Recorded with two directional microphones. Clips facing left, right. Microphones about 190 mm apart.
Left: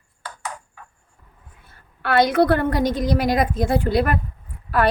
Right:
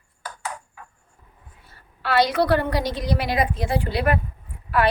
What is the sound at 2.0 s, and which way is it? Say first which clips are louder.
A woman's voice: left 3 dB; 50° left (ahead or behind).